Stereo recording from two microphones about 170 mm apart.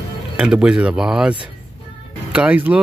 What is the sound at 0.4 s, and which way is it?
Speech, 5° right (ahead or behind).